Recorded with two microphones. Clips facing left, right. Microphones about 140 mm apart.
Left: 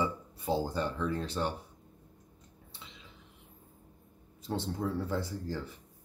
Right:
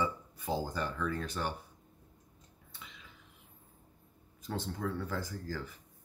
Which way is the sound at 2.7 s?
25° left (ahead or behind).